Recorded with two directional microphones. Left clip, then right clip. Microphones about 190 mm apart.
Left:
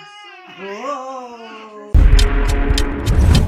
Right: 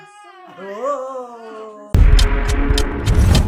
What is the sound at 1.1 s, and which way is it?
Speech, 15° right (ahead or behind).